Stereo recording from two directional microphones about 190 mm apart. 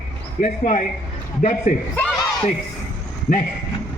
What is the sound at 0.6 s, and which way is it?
A man's voice, 40° left (ahead or behind).